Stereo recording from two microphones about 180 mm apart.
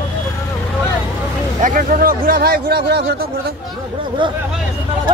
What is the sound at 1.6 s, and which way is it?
Speech, 50° right (ahead or behind).